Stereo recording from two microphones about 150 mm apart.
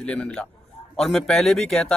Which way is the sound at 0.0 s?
5° left (ahead or behind).